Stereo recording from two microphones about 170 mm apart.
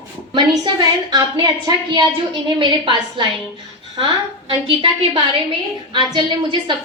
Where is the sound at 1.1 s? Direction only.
25° right (ahead or behind).